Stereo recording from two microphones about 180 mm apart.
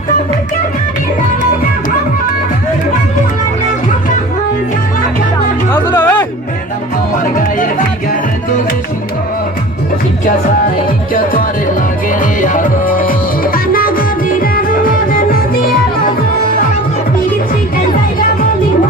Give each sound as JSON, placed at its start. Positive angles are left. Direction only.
{"t": 5.7, "sound": "music", "side_deg": 15}
{"t": 12.2, "sound": "music", "side_deg": 45}